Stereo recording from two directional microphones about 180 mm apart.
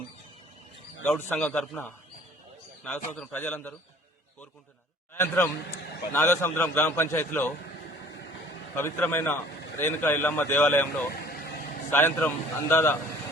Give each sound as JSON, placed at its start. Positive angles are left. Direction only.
{"t": 1.0, "sound": "a man's voice", "side_deg": 5}
{"t": 3.2, "sound": "a man's voice", "side_deg": 10}
{"t": 5.1, "sound": "a man's voice", "side_deg": 15}
{"t": 8.7, "sound": "a man's voice", "side_deg": 10}
{"t": 11.1, "sound": "vehicle", "side_deg": 60}
{"t": 11.9, "sound": "a man's voice", "side_deg": 10}